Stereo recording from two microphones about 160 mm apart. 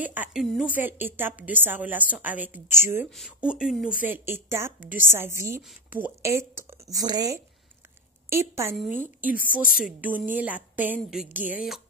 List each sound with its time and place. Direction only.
0.0 s a woman's voice: 10° right (ahead or behind)
3.1 s a woman's voice: centre (ahead or behind)
5.6 s speech: centre (ahead or behind)
5.9 s a woman's voice: 15° right (ahead or behind)
9.3 s a woman's voice: 60° left (ahead or behind)
9.8 s a woman's voice: 10° right (ahead or behind)